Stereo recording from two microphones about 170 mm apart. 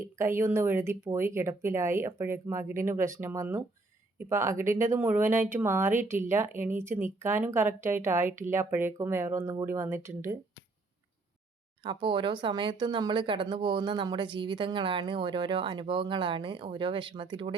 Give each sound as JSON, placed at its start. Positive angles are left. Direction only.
{"t": 0.2, "sound": "speech", "side_deg": -15}
{"t": 11.8, "sound": "speech", "side_deg": -30}